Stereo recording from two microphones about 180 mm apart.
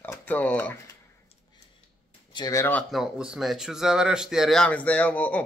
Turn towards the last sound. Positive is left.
turn(degrees=10)  # may be behind; listen again after turning